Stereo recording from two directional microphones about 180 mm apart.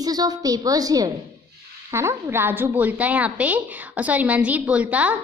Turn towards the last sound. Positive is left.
turn(degrees=-10)  # may be behind; listen again after turning